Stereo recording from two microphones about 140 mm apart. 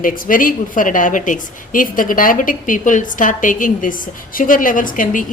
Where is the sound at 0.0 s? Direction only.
80° left.